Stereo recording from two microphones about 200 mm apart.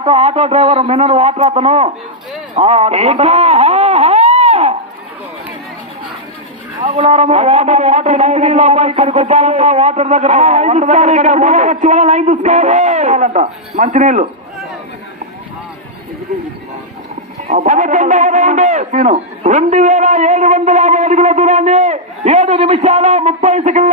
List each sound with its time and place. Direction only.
0.0 s a man's voice: 30° right (ahead or behind)
2.6 s a sound: 30° right (ahead or behind)
6.8 s a man's voice: 35° right (ahead or behind)
17.5 s a man's voice: 40° right (ahead or behind)